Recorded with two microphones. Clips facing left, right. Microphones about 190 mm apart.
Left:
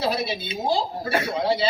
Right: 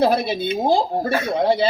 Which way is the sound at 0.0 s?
50° right (ahead or behind).